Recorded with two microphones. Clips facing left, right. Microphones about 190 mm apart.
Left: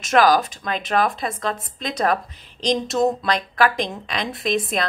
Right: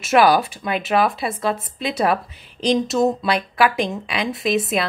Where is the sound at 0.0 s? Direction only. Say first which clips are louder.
Right 1 dB; 10° right (ahead or behind).